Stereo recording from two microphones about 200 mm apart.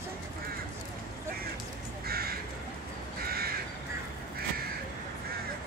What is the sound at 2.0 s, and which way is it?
Crow, 50° right (ahead or behind).